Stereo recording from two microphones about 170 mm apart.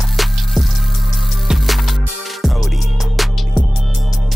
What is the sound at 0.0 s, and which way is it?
Music, centre (ahead or behind).